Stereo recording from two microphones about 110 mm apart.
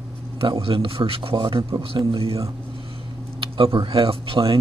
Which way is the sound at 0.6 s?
55° right (ahead or behind).